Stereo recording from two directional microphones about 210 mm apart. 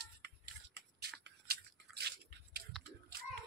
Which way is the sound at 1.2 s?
50° right (ahead or behind).